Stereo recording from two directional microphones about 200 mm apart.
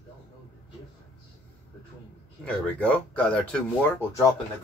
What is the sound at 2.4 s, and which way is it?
Speech, 5° left (ahead or behind).